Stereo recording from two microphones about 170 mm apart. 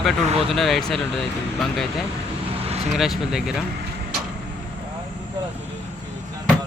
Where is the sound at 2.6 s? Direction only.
35° right (ahead or behind).